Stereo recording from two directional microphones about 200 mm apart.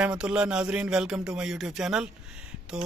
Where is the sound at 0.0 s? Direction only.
5° right (ahead or behind).